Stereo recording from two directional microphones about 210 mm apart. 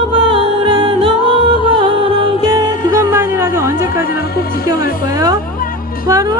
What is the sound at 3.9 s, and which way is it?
Music, 45° left (ahead or behind).